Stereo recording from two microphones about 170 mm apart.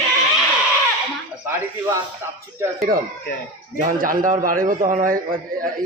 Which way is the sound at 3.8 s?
50° right (ahead or behind).